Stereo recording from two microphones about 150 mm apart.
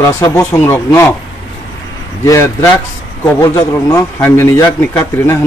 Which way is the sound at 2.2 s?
20° left (ahead or behind).